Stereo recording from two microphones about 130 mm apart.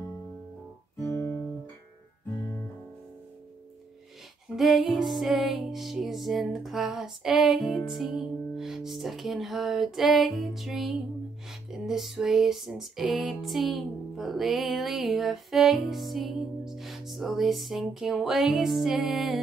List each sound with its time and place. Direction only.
1.0 s music: 20° left (ahead or behind)
4.6 s music: centre (ahead or behind)